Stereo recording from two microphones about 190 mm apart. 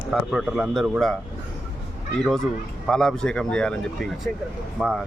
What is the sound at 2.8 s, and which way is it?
Speech, 5° left (ahead or behind).